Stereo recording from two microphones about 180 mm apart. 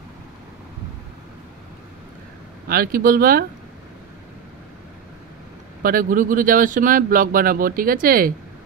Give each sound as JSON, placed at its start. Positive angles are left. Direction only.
{"t": 2.7, "sound": "speech", "side_deg": -55}
{"t": 5.8, "sound": "speech", "side_deg": -50}